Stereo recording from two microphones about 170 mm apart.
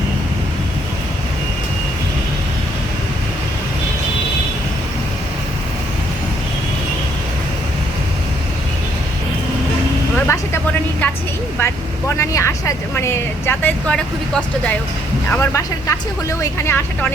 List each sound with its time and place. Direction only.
10.2 s vehicle: 15° left (ahead or behind)
11.6 s vehicle: 15° left (ahead or behind)
15.3 s speech: 15° left (ahead or behind)